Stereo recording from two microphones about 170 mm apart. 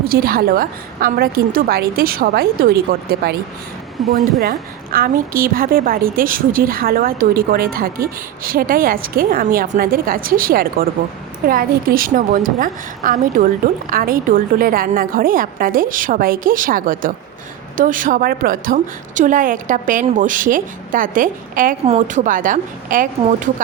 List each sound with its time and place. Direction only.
0.0 s a woman's voice: 60° right (ahead or behind)
4.4 s a woman's voice: 60° right (ahead or behind)